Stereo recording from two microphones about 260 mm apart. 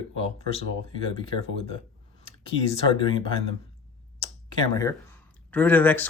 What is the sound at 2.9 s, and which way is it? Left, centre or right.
Speech, centre.